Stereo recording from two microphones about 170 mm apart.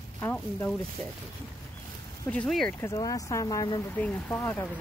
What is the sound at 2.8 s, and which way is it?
Speech, 20° left (ahead or behind).